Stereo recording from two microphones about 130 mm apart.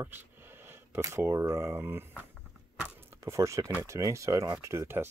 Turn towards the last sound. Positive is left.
turn(degrees=-20)  # may be behind; listen again after turning